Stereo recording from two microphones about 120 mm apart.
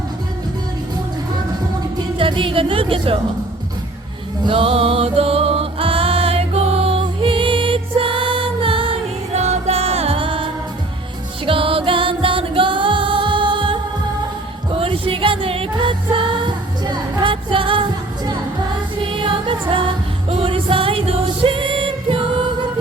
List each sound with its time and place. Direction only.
2.1 s a woman's voice: 45° right (ahead or behind)
4.4 s music: 50° right (ahead or behind)
9.3 s music: 65° right (ahead or behind); by 22.4 s 45° right (ahead or behind)